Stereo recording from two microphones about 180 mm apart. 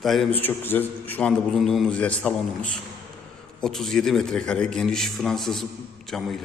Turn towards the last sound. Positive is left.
turn(degrees=5)  # may be behind; listen again after turning